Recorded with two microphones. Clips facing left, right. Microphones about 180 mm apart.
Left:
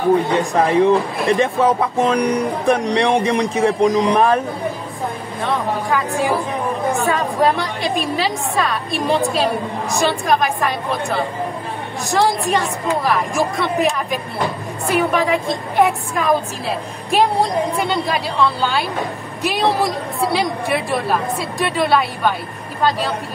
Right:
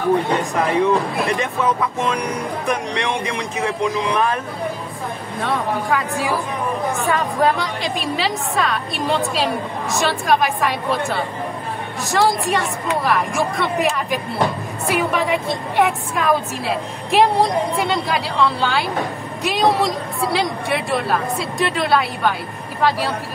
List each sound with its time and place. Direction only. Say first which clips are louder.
0.3 s speech: left 3 dB; 35° left (ahead or behind)
5.4 s a woman's voice: left 1 dB; centre (ahead or behind)